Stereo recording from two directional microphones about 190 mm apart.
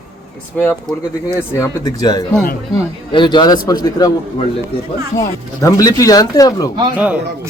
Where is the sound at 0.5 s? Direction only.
10° left (ahead or behind).